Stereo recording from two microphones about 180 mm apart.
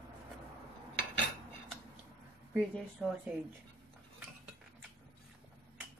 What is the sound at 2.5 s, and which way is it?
Speech, 5° right (ahead or behind).